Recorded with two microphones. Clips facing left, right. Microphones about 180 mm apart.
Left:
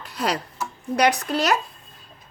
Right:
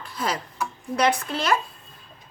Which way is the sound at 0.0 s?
70° left (ahead or behind).